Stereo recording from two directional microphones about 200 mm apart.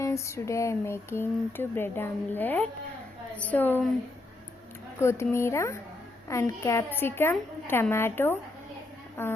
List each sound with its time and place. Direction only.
0.0 s speech: 15° left (ahead or behind)
4.9 s speech: 10° left (ahead or behind)